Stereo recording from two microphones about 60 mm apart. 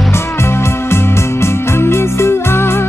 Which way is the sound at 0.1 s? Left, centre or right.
Left.